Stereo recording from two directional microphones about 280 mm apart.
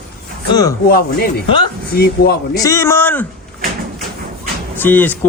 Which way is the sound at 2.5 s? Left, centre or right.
Centre.